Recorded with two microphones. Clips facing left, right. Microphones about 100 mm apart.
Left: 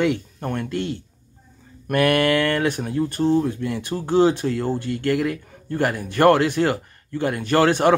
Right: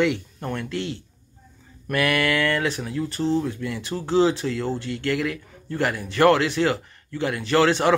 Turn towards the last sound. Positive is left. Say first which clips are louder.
# left 2 dB
turn(degrees=50)  # may be behind; listen again after turning